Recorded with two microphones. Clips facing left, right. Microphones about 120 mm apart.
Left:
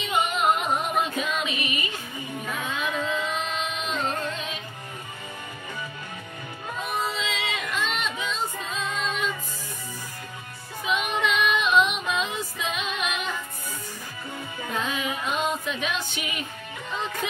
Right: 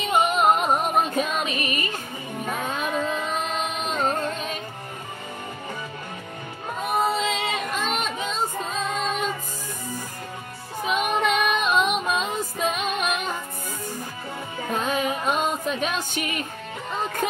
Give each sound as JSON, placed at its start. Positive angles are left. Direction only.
{"t": 0.0, "sound": "music", "side_deg": -45}
{"t": 2.4, "sound": "carnatic music", "side_deg": -40}
{"t": 6.8, "sound": "child singing", "side_deg": -50}
{"t": 10.8, "sound": "child singing", "side_deg": -45}
{"t": 14.6, "sound": "music", "side_deg": -45}